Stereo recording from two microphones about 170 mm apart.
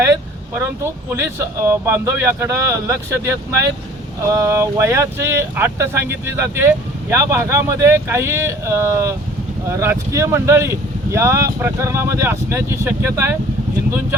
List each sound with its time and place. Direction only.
0.6 s speech: 15° right (ahead or behind)